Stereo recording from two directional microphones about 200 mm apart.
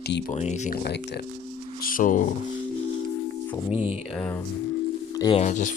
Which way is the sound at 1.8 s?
45° left (ahead or behind).